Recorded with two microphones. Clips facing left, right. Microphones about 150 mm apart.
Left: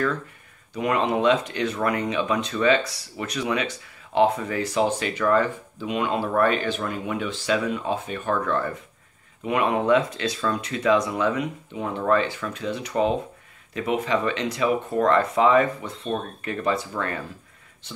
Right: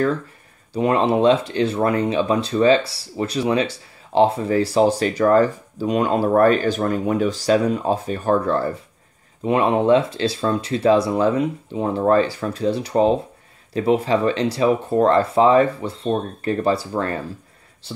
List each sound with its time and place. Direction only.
0.7 s speech: 30° right (ahead or behind)